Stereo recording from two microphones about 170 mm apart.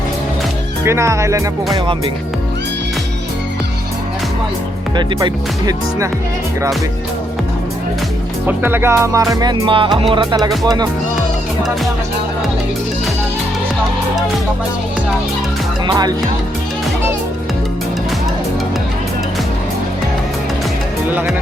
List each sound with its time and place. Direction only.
0.9 s music: 15° right (ahead or behind)
4.9 s speech: 25° right (ahead or behind)
8.4 s music: 10° right (ahead or behind)
9.3 s speech: 25° right (ahead or behind)
15.9 s speech: 25° right (ahead or behind)
21.1 s music: 10° right (ahead or behind)